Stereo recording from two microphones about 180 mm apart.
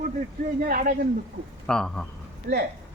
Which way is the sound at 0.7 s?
55° right (ahead or behind).